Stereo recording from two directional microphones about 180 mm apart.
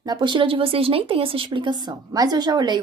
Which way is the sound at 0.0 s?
25° right (ahead or behind).